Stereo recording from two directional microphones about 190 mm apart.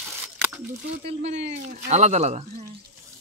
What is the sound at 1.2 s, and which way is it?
Speech, 35° right (ahead or behind).